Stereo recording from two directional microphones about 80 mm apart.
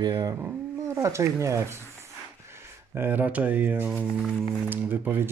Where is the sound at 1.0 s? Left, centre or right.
Right.